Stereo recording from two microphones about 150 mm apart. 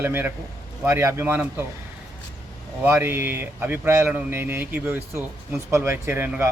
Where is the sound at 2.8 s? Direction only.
15° right (ahead or behind).